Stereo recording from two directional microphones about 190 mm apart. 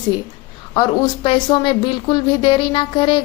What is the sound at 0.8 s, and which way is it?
A woman's voice, 25° left (ahead or behind).